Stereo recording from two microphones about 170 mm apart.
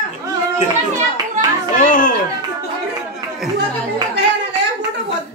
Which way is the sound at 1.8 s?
55° left (ahead or behind).